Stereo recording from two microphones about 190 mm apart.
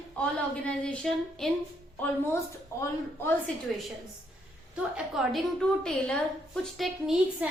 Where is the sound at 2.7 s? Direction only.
15° left (ahead or behind).